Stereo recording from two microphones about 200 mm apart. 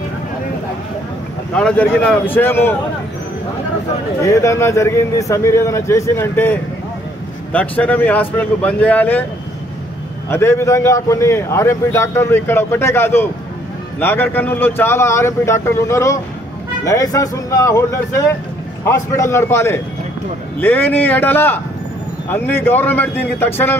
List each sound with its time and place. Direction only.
1.5 s a man's voice: 5° left (ahead or behind)
4.2 s a man's voice: 15° left (ahead or behind)
10.3 s a man's voice: 15° left (ahead or behind)